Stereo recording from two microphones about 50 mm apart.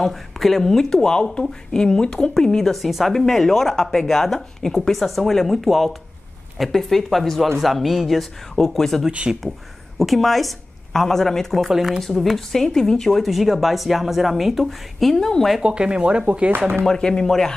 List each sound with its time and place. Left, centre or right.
0.0 s speech: centre
9.3 s speech: centre
9.9 s speech: centre
11.7 s speech: centre
12.0 s speech: centre
15.6 s speech: centre
16.8 s speech: centre